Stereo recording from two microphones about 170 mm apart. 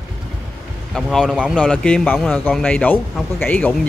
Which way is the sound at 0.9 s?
Centre (ahead or behind).